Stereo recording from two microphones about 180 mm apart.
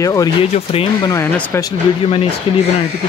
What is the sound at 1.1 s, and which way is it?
Speech, 15° left (ahead or behind).